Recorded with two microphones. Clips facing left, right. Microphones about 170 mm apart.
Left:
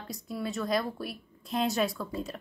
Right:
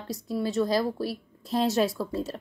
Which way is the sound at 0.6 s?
30° right (ahead or behind).